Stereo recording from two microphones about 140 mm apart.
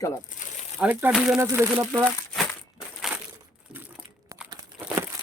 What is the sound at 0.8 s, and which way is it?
Speech, 10° right (ahead or behind).